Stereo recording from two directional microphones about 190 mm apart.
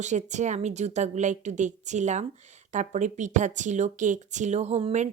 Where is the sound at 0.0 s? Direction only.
40° right (ahead or behind).